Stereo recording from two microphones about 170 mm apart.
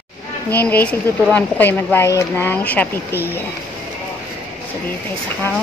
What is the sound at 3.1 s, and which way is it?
Speech, 10° right (ahead or behind).